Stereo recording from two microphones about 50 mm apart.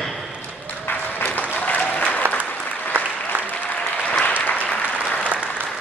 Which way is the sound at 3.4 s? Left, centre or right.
Left.